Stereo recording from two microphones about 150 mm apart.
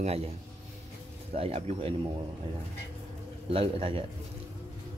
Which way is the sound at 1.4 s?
40° right (ahead or behind).